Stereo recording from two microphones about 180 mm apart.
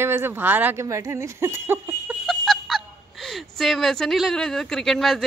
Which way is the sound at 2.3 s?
Centre (ahead or behind).